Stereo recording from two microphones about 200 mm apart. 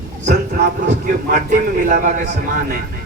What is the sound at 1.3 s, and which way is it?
Speech, 45° right (ahead or behind).